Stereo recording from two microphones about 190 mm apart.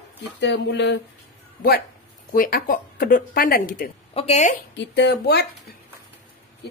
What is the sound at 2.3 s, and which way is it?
Speech, 50° left (ahead or behind).